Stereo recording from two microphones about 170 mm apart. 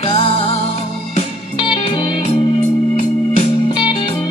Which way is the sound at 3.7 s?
25° left (ahead or behind).